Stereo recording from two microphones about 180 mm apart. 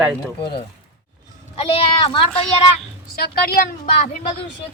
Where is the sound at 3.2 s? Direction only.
60° left (ahead or behind).